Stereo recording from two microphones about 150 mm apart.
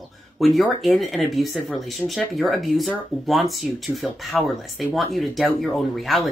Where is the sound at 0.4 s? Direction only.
Centre (ahead or behind).